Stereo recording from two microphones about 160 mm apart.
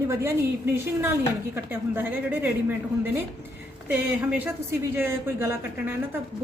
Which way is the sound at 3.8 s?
10° right (ahead or behind).